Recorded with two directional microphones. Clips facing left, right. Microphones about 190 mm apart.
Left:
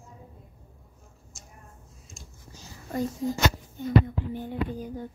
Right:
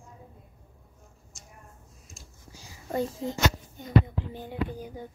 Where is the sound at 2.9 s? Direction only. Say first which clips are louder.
Left 1 dB; 30° right (ahead or behind).